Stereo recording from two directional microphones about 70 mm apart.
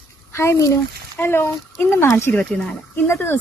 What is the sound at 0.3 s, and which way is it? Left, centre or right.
Speech, left.